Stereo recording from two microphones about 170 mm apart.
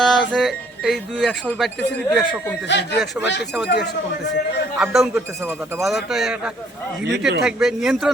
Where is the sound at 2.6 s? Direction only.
90° left.